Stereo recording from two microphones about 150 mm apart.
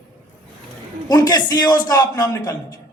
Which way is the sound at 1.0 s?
25° left (ahead or behind).